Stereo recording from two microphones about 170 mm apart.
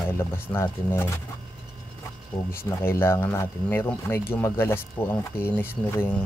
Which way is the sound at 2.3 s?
20° left (ahead or behind).